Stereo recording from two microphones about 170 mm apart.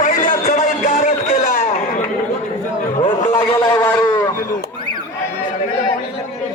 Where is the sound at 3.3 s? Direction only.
25° left (ahead or behind).